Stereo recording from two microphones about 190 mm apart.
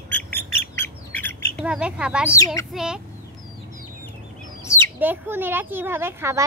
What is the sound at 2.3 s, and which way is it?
Chicken, 15° left (ahead or behind).